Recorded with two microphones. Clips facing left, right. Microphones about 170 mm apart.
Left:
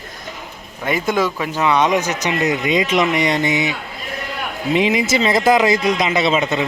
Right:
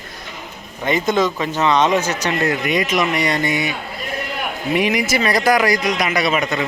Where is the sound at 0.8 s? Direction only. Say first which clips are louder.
Right 1 dB; 5° left (ahead or behind).